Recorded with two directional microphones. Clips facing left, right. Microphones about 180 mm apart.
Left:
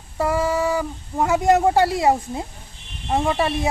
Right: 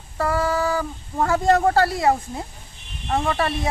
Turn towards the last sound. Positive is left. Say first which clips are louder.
# left 2 dB
turn(degrees=20)  # may be behind; listen again after turning